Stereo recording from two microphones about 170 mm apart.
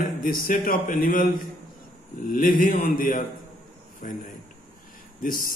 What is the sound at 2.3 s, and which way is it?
A man's voice, 50° left (ahead or behind).